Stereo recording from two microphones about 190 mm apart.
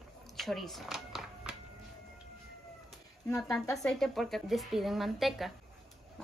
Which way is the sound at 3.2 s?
20° left (ahead or behind).